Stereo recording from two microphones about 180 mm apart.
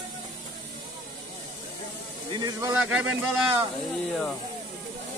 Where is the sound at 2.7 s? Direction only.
5° right (ahead or behind).